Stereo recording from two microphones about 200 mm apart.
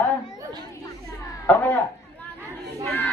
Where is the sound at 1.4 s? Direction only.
10° left (ahead or behind).